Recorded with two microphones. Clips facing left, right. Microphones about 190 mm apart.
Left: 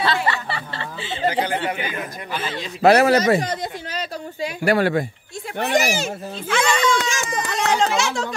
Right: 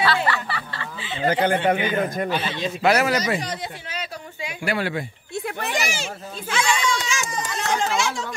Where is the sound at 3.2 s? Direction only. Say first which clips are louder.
Left 6 dB; 45° left (ahead or behind).